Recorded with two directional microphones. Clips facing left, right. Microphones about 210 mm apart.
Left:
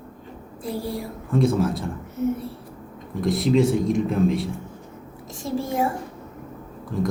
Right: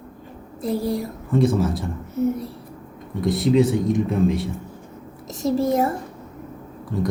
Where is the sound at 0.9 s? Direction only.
Centre (ahead or behind).